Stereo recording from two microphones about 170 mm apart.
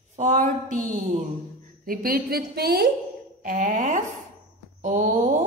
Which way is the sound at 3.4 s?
50° right (ahead or behind).